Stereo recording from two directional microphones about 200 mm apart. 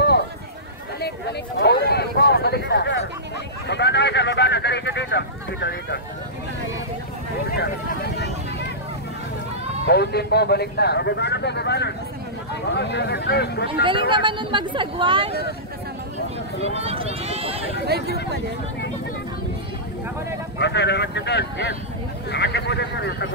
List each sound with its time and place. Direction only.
1.6 s speech: 55° left (ahead or behind)
7.5 s a sound: 55° left (ahead or behind)
9.8 s speech: 55° left (ahead or behind)
14.1 s speech: 25° right (ahead or behind)
16.7 s speech: 30° right (ahead or behind)
17.8 s speech: 55° right (ahead or behind)
20.5 s speech: 60° left (ahead or behind)